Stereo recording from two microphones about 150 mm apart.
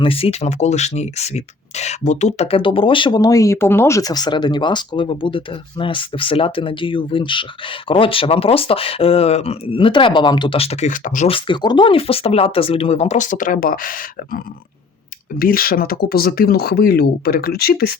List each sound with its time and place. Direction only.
0.0 s speech: 40° left (ahead or behind); by 11.3 s 60° left (ahead or behind)
11.3 s speech: 35° left (ahead or behind); by 17.9 s 90° left